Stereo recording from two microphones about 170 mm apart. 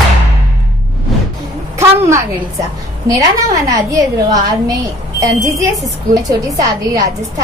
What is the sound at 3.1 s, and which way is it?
A woman's voice, 20° right (ahead or behind).